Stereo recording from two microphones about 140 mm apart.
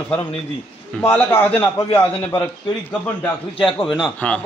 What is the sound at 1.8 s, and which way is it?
Speech, 35° left (ahead or behind).